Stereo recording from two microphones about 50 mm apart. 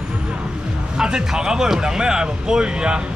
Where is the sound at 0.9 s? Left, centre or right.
Centre.